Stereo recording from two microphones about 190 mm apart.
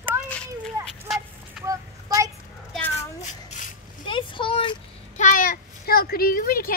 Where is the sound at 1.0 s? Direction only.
Centre (ahead or behind).